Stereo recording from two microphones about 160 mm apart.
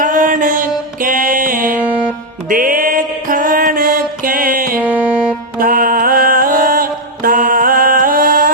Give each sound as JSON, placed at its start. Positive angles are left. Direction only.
{"t": 0.0, "sound": "music", "side_deg": -55}
{"t": 1.8, "sound": "music", "side_deg": -10}
{"t": 2.5, "sound": "music", "side_deg": -60}
{"t": 4.8, "sound": "music", "side_deg": -10}
{"t": 5.5, "sound": "music", "side_deg": -60}